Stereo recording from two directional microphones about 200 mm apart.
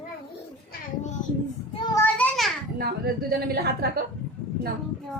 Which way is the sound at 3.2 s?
50° right (ahead or behind).